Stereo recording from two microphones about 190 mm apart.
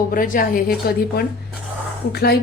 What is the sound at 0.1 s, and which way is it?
A woman's voice, 45° left (ahead or behind).